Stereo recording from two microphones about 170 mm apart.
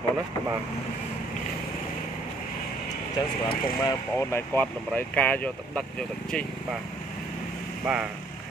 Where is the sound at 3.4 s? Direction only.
25° left (ahead or behind).